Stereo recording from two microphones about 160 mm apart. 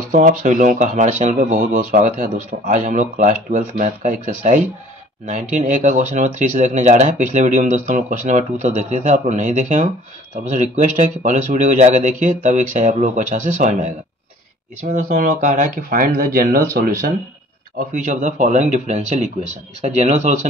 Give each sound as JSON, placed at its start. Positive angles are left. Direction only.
{"t": 0.1, "sound": "speech", "side_deg": -55}
{"t": 17.7, "sound": "speech", "side_deg": -55}